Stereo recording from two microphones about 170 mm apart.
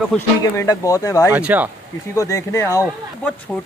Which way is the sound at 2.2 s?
20° left (ahead or behind).